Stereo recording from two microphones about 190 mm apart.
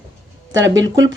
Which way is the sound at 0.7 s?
80° right.